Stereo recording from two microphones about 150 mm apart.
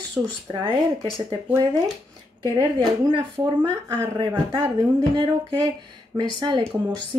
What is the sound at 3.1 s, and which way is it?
Speech, 30° right (ahead or behind).